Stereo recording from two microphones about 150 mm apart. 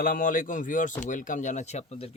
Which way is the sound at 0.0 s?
65° left (ahead or behind).